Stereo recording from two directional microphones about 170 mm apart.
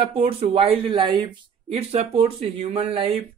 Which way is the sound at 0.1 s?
35° right (ahead or behind).